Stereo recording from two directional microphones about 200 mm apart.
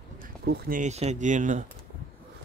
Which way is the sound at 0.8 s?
35° right (ahead or behind).